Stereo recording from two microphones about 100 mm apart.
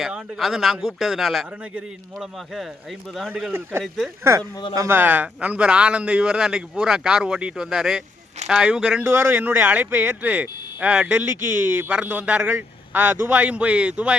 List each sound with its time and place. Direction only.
0.0 s a man's voice: centre (ahead or behind)
3.2 s a man's voice: 10° right (ahead or behind)
3.5 s speech: 20° right (ahead or behind)
4.9 s a man's voice: 20° right (ahead or behind)
9.0 s a man's voice: 20° right (ahead or behind)